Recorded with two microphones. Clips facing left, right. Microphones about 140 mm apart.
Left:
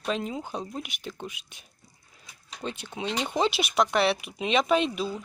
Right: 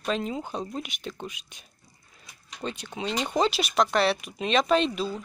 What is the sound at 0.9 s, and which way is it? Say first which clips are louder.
Speech: right 3 dB; 20° right (ahead or behind).